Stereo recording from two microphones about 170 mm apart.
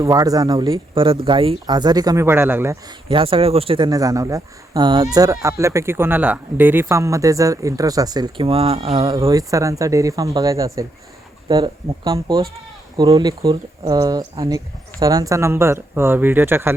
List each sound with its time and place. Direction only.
0.0 s speech: 20° right (ahead or behind)
3.1 s speech: 30° right (ahead or behind); by 16.7 s 15° right (ahead or behind)